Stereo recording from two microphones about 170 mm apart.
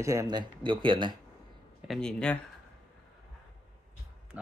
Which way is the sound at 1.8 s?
Centre (ahead or behind).